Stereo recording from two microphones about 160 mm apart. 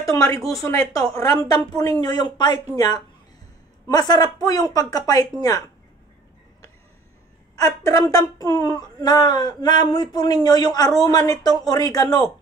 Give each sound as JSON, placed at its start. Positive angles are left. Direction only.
{"t": 0.0, "sound": "a sound", "side_deg": 20}
{"t": 0.4, "sound": "speech", "side_deg": 0}
{"t": 0.7, "sound": "a woman's voice", "side_deg": 20}
{"t": 7.5, "sound": "a woman's voice", "side_deg": 20}